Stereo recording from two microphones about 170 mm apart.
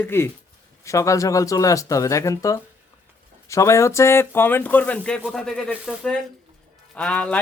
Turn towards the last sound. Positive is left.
turn(degrees=10)  # may be behind; listen again after turning